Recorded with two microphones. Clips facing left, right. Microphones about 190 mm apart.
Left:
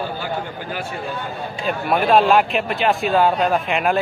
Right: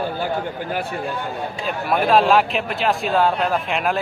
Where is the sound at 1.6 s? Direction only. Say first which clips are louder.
Left 2 dB; centre (ahead or behind).